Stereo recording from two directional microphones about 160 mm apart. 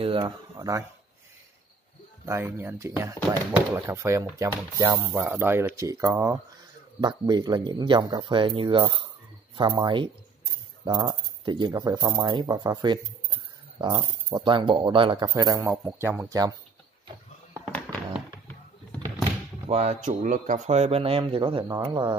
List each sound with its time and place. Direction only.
0.0 s speech: 30° right (ahead or behind)
2.2 s speech: 15° right (ahead or behind)
19.7 s speech: 45° right (ahead or behind)
21.6 s speech: 20° right (ahead or behind)